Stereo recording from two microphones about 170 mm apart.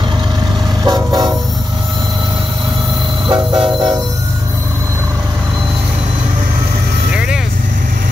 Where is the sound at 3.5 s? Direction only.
5° right (ahead or behind).